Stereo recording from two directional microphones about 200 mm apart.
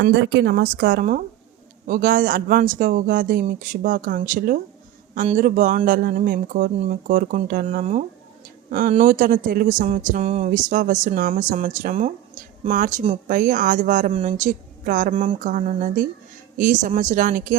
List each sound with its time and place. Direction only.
0.0 s speech: 65° right (ahead or behind); by 17.6 s 40° right (ahead or behind)